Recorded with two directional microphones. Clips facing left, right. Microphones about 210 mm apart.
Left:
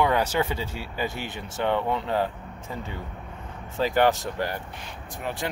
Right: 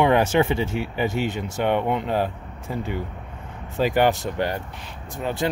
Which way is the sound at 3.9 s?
15° right (ahead or behind).